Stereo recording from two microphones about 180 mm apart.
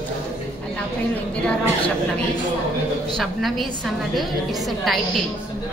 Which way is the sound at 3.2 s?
Centre (ahead or behind).